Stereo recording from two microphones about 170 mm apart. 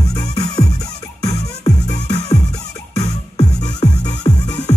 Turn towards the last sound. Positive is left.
turn(degrees=25)  # may be behind; listen again after turning